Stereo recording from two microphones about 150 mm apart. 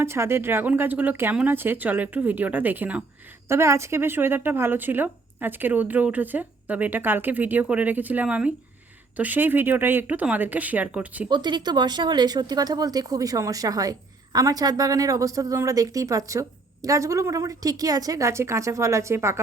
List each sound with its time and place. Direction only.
0.0 s a woman's voice: 15° right (ahead or behind)
11.3 s a woman's voice: 30° right (ahead or behind)